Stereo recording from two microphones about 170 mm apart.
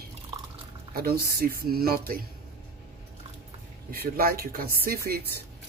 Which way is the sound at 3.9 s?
60° right (ahead or behind).